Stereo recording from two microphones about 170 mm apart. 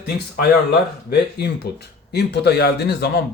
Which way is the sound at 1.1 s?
70° left (ahead or behind).